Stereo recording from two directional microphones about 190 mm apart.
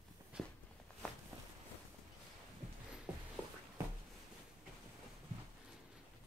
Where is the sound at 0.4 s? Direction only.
Centre (ahead or behind).